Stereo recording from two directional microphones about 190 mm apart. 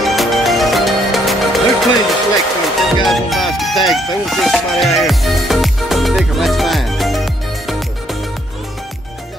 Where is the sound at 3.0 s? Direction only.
Centre (ahead or behind).